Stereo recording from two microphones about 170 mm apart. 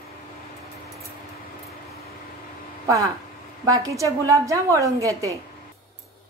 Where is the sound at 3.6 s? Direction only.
20° right (ahead or behind).